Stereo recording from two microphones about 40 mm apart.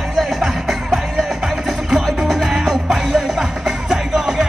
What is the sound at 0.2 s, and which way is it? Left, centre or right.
Music, centre.